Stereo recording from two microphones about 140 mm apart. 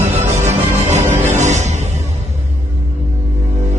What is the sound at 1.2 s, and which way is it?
Music, 55° right (ahead or behind).